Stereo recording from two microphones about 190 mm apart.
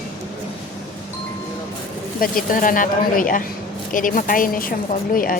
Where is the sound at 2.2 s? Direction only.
45° left (ahead or behind).